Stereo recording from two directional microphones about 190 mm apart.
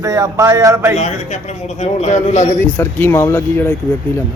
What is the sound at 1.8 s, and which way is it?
Speech, 35° left (ahead or behind).